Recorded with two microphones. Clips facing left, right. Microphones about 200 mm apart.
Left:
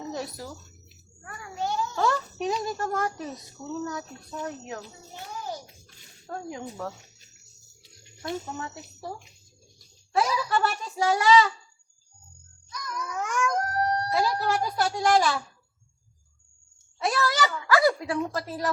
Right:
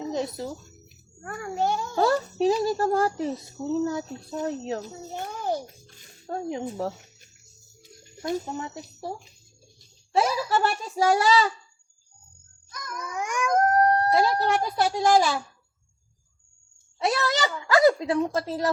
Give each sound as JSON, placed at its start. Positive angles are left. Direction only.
{"t": 0.0, "sound": "a sound", "side_deg": -20}
{"t": 1.2, "sound": "a sound", "side_deg": -50}
{"t": 2.0, "sound": "a child's voice", "side_deg": -35}
{"t": 4.8, "sound": "a child's voice", "side_deg": -50}
{"t": 6.2, "sound": "a woman's voice", "side_deg": -25}
{"t": 8.5, "sound": "a woman's voice", "side_deg": -20}
{"t": 10.5, "sound": "a woman's voice", "side_deg": -30}
{"t": 11.1, "sound": "a child's voice", "side_deg": -40}
{"t": 12.7, "sound": "babbling", "side_deg": -50}
{"t": 13.1, "sound": "dog", "side_deg": -10}
{"t": 13.5, "sound": "dog", "side_deg": -50}
{"t": 14.1, "sound": "a woman's voice", "side_deg": -25}
{"t": 17.0, "sound": "a woman's voice", "side_deg": -20}